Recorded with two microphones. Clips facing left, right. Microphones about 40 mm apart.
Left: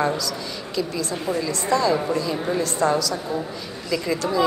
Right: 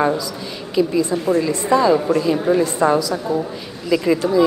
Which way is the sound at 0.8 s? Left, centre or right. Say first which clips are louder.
Right 9 dB; centre.